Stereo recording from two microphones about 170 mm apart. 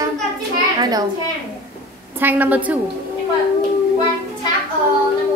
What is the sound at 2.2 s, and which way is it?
Speech, 10° right (ahead or behind).